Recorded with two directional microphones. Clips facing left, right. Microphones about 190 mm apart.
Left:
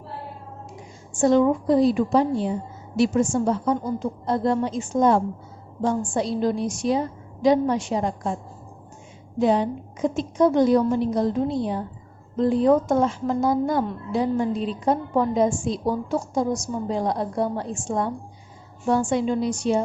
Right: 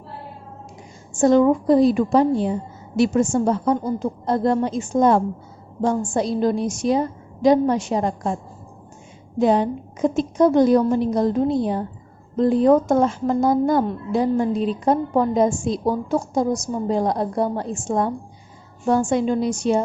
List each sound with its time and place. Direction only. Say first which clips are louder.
1.2 s a woman's voice: right 3 dB; 45° right (ahead or behind)
5.8 s a woman's voice: right 3 dB; 45° right (ahead or behind)
9.4 s a woman's voice: right 2 dB; 50° right (ahead or behind)